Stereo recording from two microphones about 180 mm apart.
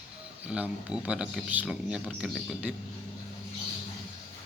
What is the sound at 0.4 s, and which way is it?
Speech, 5° right (ahead or behind).